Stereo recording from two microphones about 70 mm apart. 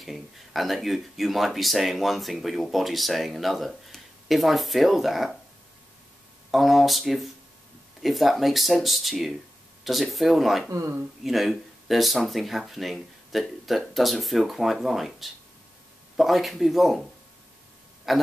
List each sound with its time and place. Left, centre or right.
0.0 s speech: centre
6.5 s speech: centre
10.7 s speech: right
11.2 s speech: centre
18.1 s speech: centre